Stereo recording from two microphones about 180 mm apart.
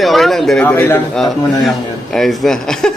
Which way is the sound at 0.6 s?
10° left (ahead or behind).